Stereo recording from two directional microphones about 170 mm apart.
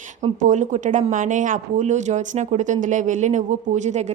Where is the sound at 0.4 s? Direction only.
45° right (ahead or behind).